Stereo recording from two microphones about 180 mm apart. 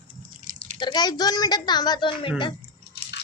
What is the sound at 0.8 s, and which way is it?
A woman's voice, 25° left (ahead or behind).